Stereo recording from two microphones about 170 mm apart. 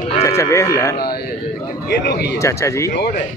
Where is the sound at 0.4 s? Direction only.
20° left (ahead or behind).